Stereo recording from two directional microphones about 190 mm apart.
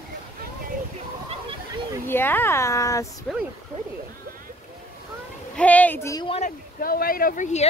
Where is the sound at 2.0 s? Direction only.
10° left (ahead or behind).